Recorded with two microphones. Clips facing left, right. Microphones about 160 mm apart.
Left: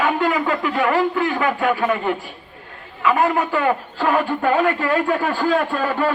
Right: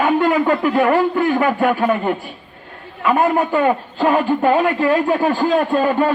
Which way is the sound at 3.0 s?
50° right (ahead or behind).